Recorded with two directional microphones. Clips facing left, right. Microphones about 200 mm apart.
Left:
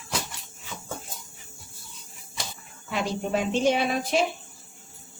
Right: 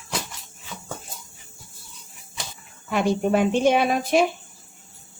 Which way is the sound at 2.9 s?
55° right (ahead or behind).